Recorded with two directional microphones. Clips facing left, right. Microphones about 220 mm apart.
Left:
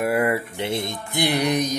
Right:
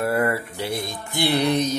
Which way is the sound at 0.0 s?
15° left (ahead or behind).